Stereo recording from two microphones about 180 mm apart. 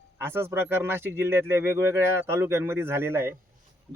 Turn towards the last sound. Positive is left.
turn(degrees=-15)  # may be behind; listen again after turning